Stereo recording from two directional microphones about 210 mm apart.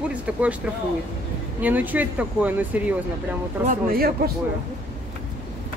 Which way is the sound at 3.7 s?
45° right (ahead or behind).